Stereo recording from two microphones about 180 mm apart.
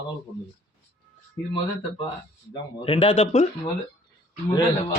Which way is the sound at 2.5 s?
30° left (ahead or behind).